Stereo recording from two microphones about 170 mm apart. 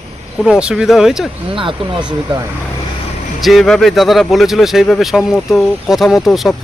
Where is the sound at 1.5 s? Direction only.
30° right (ahead or behind).